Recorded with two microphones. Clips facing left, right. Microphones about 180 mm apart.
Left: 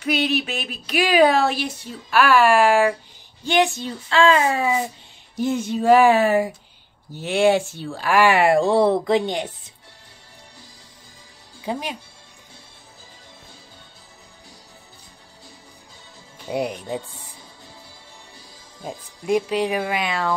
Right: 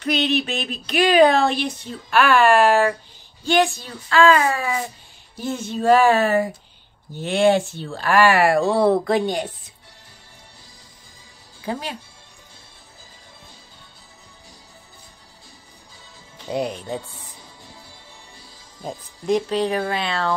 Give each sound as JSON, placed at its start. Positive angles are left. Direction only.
{"t": 0.0, "sound": "a child's voice", "side_deg": 10}
{"t": 11.6, "sound": "speech", "side_deg": 15}
{"t": 16.4, "sound": "speech", "side_deg": 10}
{"t": 18.9, "sound": "speech", "side_deg": 10}